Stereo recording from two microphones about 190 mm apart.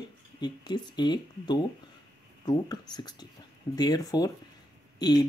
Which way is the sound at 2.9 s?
20° left (ahead or behind).